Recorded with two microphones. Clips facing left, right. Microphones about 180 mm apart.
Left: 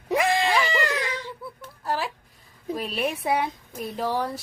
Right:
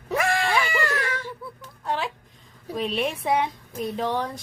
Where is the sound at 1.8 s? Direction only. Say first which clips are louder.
Even; 5° left (ahead or behind).